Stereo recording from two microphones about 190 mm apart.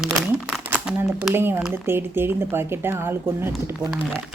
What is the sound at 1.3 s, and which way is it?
Speech, 10° right (ahead or behind).